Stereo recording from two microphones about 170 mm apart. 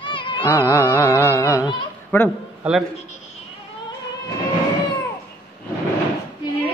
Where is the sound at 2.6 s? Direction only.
5° right (ahead or behind).